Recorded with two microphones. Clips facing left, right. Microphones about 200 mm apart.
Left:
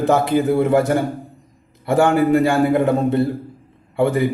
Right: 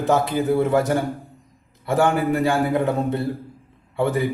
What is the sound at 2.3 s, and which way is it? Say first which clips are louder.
Speech: left 5 dB; 60° left (ahead or behind).